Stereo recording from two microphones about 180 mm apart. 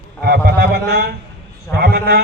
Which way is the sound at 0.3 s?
65° right (ahead or behind).